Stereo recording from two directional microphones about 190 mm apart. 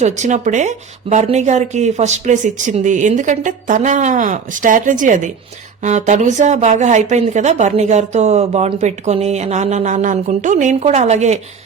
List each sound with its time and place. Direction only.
0.0 s speech: 40° right (ahead or behind)